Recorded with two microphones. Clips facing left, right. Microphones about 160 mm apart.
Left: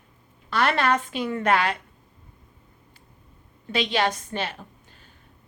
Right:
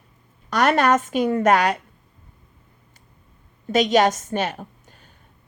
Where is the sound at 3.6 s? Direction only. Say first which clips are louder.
Right 7 dB; 45° right (ahead or behind).